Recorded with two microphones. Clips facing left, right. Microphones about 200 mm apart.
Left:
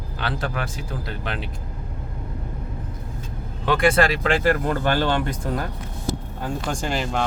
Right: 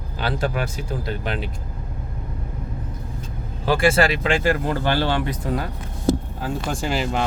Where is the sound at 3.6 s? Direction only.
30° right (ahead or behind).